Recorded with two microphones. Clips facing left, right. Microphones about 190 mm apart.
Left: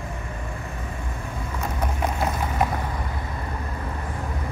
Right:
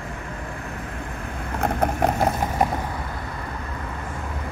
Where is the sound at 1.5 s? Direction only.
60° right (ahead or behind).